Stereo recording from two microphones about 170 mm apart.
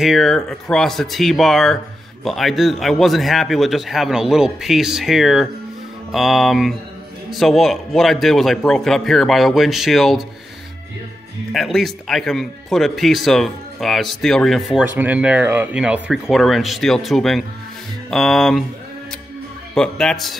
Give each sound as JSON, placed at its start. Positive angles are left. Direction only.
{"t": 0.0, "sound": "speech", "side_deg": 0}
{"t": 11.5, "sound": "speech", "side_deg": 0}
{"t": 19.7, "sound": "speech", "side_deg": 5}